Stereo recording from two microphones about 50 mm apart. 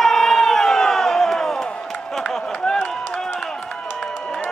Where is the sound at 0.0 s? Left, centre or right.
Centre.